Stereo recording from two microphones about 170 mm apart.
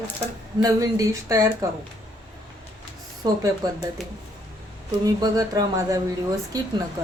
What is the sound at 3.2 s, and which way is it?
Speech, 25° right (ahead or behind).